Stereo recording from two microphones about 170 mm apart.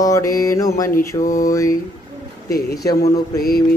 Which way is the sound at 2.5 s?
65° left (ahead or behind).